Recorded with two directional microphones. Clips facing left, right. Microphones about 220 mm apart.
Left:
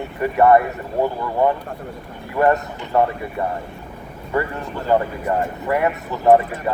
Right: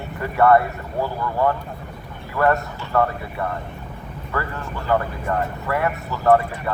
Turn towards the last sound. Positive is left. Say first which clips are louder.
# left 3 dB
turn(degrees=15)  # may be behind; listen again after turning